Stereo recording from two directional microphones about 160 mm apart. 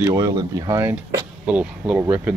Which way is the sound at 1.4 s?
10° right (ahead or behind).